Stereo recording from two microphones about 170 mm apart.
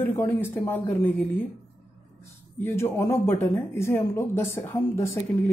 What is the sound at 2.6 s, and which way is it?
Speech, 15° left (ahead or behind).